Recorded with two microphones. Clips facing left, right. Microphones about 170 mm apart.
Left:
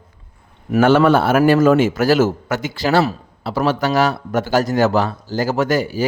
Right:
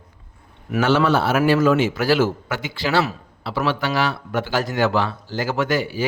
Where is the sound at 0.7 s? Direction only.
50° left (ahead or behind).